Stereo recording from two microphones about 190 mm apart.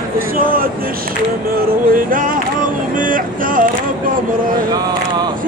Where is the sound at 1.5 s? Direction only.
50° right (ahead or behind).